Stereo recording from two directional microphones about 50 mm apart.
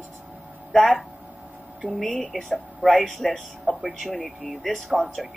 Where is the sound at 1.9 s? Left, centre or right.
Centre.